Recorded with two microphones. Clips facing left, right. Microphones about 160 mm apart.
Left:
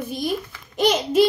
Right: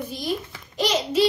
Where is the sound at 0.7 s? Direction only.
50° left (ahead or behind).